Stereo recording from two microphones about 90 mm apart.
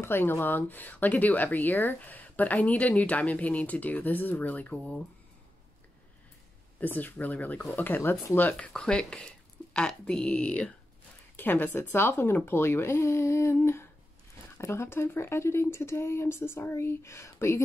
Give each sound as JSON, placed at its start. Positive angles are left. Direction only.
{"t": 0.0, "sound": "speech", "side_deg": 25}
{"t": 6.8, "sound": "speech", "side_deg": 20}
{"t": 14.6, "sound": "speech", "side_deg": 30}